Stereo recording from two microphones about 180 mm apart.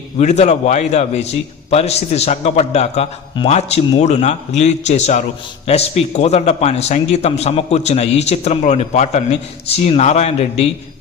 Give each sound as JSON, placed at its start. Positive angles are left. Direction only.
{"t": 0.2, "sound": "a man's voice", "side_deg": 40}